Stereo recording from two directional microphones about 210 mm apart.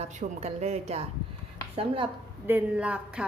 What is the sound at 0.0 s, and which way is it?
A woman's voice, 35° right (ahead or behind).